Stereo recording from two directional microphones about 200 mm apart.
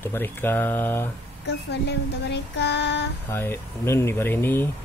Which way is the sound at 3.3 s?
10° left (ahead or behind).